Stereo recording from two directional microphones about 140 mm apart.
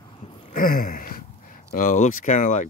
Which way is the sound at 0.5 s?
80° left.